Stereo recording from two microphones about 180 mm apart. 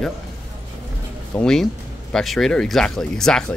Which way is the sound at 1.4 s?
5° left (ahead or behind).